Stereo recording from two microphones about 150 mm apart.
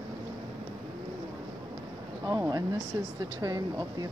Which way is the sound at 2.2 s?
25° right (ahead or behind).